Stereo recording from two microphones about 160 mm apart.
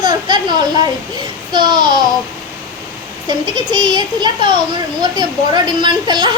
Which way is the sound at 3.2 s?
30° right (ahead or behind).